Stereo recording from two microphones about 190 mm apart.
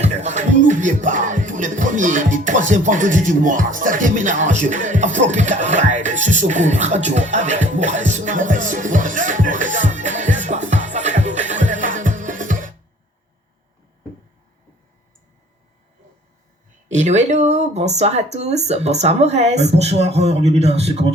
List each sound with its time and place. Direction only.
0.0 s music: 35° right (ahead or behind)
16.9 s speech: 40° right (ahead or behind)